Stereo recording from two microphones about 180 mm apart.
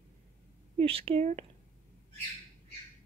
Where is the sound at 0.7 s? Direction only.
30° right (ahead or behind).